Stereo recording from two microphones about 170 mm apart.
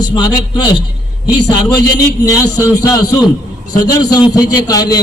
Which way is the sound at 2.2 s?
20° left (ahead or behind).